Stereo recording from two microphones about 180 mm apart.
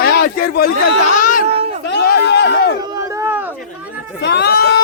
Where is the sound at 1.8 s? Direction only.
65° left (ahead or behind).